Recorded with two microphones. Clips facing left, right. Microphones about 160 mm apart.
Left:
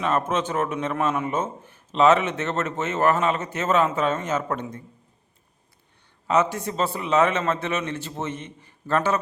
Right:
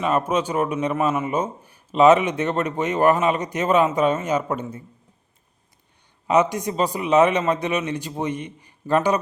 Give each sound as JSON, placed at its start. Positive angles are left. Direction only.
{"t": 0.0, "sound": "a man's voice", "side_deg": -10}
{"t": 6.2, "sound": "a man's voice", "side_deg": -15}